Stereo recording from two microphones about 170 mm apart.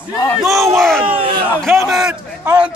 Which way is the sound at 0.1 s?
20° left (ahead or behind).